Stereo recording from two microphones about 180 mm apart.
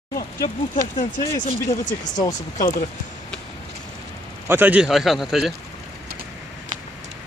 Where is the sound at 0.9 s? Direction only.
45° left (ahead or behind).